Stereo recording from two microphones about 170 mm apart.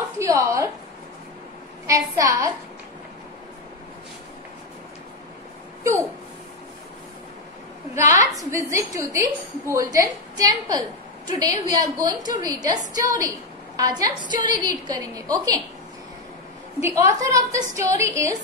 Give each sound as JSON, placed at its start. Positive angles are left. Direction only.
{"t": 0.2, "sound": "a sound", "side_deg": -15}
{"t": 1.9, "sound": "a woman's voice", "side_deg": -20}
{"t": 7.9, "sound": "a woman's voice", "side_deg": -15}
{"t": 16.8, "sound": "a woman's voice", "side_deg": -20}